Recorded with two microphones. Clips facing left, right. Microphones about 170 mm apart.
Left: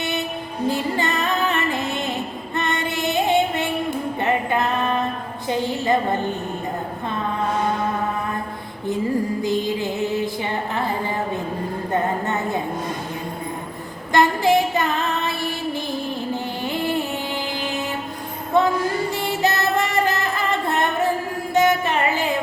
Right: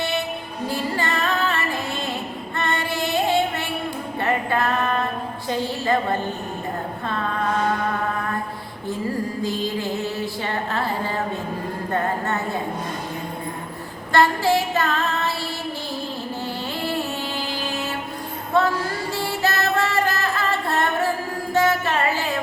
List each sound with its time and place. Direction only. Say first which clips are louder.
0.7 s music: left 1 dB; 20° left (ahead or behind)
2.6 s female singing: left 1 dB; 20° left (ahead or behind)
5.5 s music: left 2 dB; 15° left (ahead or behind)
9.4 s music: left 3 dB; 20° left (ahead or behind)
14.1 s female singing: left 1 dB; 15° left (ahead or behind)
16.3 s music: left 3 dB; 15° left (ahead or behind)